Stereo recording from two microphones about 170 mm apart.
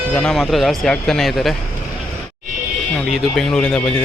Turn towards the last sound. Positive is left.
turn(degrees=5)  # may be behind; listen again after turning